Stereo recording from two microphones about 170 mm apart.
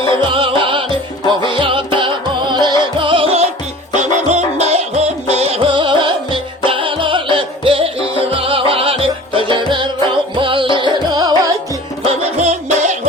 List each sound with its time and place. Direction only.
0.3 s music: 30° right (ahead or behind)
12.0 s music: 40° right (ahead or behind)